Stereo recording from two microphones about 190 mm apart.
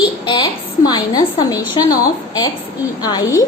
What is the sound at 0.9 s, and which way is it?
Speech, 20° left (ahead or behind).